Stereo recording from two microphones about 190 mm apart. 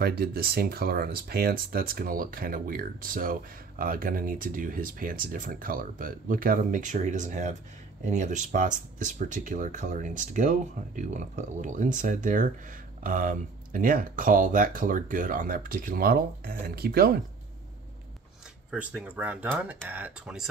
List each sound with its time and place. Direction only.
0.0 s speech: 55° right (ahead or behind)
18.7 s speech: 5° right (ahead or behind)